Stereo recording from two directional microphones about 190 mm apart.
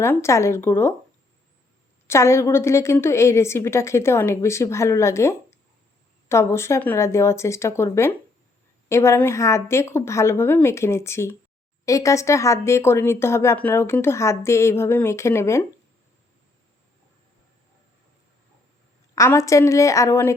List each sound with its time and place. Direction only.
0.0 s speech: 15° left (ahead or behind)
2.0 s speech: 15° left (ahead or behind)
19.1 s speech: 15° left (ahead or behind)